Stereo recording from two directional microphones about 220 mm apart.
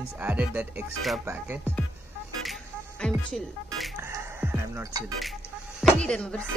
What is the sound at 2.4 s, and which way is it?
Music, centre (ahead or behind).